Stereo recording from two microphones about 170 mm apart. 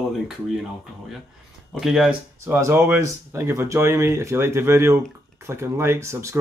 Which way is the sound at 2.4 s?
15° right (ahead or behind).